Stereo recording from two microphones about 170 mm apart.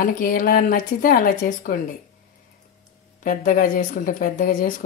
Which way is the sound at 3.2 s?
55° left (ahead or behind).